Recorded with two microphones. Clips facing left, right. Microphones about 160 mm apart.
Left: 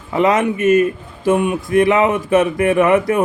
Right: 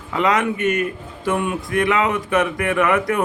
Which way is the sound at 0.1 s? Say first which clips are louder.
Left 4 dB; 25° left (ahead or behind).